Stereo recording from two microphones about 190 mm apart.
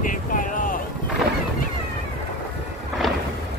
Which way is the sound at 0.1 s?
45° left (ahead or behind).